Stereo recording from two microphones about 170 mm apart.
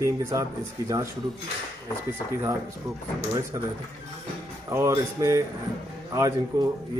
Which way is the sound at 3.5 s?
20° right (ahead or behind).